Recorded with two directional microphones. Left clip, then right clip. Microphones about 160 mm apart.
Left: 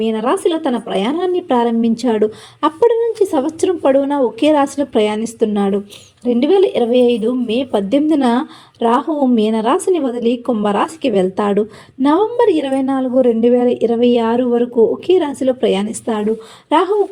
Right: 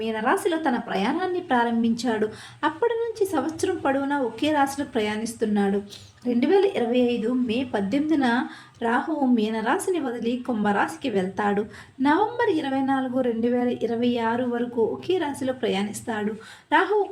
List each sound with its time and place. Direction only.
0.0 s a woman's voice: 35° left (ahead or behind)